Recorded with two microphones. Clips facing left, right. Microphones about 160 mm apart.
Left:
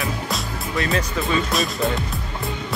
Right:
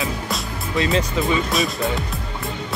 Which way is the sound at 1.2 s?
Centre (ahead or behind).